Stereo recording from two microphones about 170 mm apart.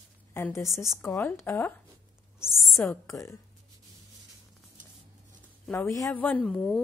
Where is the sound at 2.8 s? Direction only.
15° left (ahead or behind).